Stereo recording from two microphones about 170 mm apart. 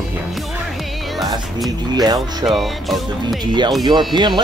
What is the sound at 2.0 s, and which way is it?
Speech, 25° right (ahead or behind).